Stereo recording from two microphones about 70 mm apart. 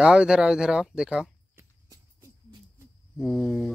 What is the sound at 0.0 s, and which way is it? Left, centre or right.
Speech, centre.